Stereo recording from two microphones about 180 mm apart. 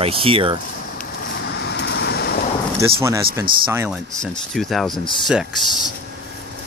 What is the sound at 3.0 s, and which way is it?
Speech, 15° right (ahead or behind).